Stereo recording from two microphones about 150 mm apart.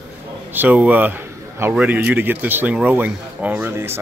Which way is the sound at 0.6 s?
10° right (ahead or behind).